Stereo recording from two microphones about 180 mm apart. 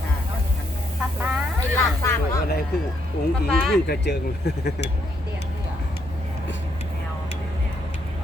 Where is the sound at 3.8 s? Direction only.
65° left (ahead or behind).